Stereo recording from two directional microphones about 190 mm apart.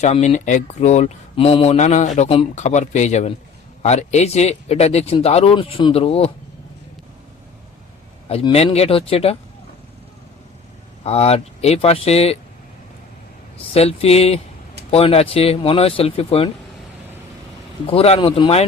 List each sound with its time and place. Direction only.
0.0 s speech: 40° left (ahead or behind)
8.3 s speech: 30° left (ahead or behind)
11.0 s speech: 30° left (ahead or behind)
13.6 s speech: 30° left (ahead or behind)
17.8 s speech: 30° left (ahead or behind)